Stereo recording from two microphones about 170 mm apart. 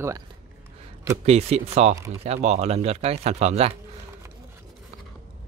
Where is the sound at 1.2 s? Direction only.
40° right (ahead or behind).